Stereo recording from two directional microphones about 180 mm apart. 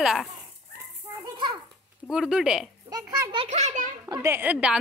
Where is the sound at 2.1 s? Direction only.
5° right (ahead or behind).